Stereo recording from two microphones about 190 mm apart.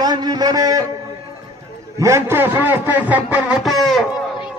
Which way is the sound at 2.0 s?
15° right (ahead or behind).